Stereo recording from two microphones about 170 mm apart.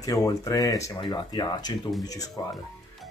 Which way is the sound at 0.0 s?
20° left (ahead or behind).